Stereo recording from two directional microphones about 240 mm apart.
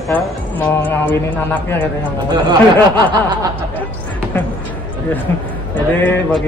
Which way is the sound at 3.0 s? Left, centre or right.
Centre.